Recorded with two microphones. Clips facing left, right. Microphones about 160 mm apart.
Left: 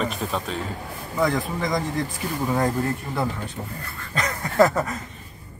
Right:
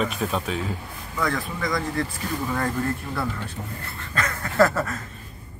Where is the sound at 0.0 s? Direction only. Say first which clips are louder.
Right 1 dB; centre (ahead or behind).